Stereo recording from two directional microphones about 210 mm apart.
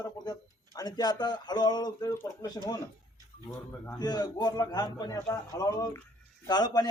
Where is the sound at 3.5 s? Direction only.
15° left (ahead or behind).